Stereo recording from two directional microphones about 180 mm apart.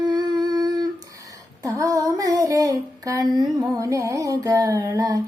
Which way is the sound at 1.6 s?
20° right (ahead or behind).